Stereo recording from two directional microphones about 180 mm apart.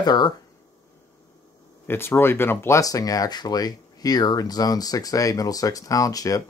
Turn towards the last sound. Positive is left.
turn(degrees=20)  # may be behind; listen again after turning